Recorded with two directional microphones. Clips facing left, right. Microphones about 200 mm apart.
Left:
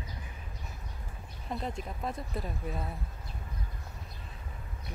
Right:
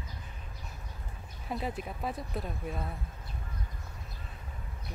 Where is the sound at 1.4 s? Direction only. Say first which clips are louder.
Right 1 dB; 5° right (ahead or behind).